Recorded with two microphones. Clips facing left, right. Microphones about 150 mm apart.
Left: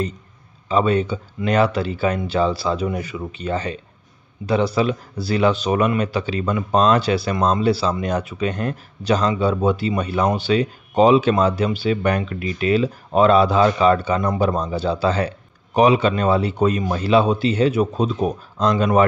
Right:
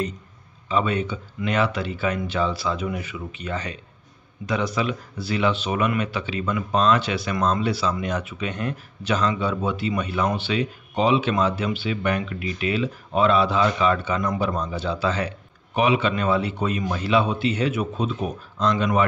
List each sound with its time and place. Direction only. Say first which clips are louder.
0.7 s speech: left 5 dB; 35° left (ahead or behind)